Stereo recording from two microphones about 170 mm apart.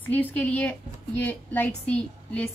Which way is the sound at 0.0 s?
10° left (ahead or behind).